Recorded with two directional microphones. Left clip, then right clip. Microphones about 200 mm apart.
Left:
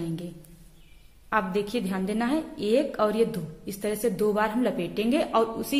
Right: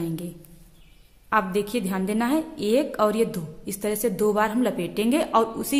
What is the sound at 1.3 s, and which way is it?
A woman's voice, 15° right (ahead or behind).